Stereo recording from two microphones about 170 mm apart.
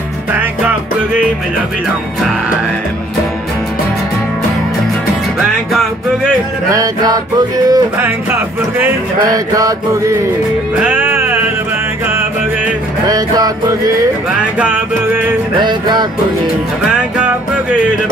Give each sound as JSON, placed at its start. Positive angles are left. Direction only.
{"t": 0.3, "sound": "music", "side_deg": -10}
{"t": 6.7, "sound": "music", "side_deg": -20}
{"t": 10.8, "sound": "music", "side_deg": -10}
{"t": 13.1, "sound": "music", "side_deg": -20}
{"t": 15.6, "sound": "music", "side_deg": -25}